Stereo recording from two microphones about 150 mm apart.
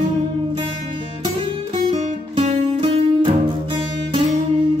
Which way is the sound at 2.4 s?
40° right (ahead or behind).